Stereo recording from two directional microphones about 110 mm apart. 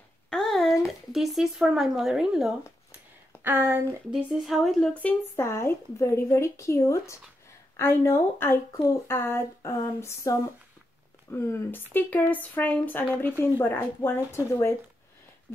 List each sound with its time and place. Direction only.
0.3 s a sound: 5° left (ahead or behind)
0.8 s speech: centre (ahead or behind)
3.4 s speech: 20° right (ahead or behind)
4.1 s speech: 5° right (ahead or behind)
5.3 s speech: 25° left (ahead or behind)